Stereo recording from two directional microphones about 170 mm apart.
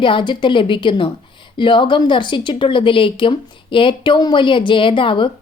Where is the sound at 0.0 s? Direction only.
30° left (ahead or behind).